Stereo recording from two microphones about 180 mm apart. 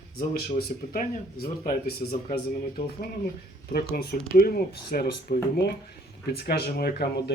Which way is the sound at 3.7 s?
60° left (ahead or behind).